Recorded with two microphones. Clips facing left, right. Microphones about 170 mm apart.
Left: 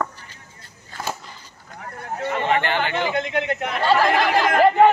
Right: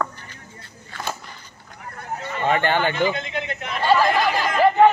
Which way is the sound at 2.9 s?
65° left (ahead or behind).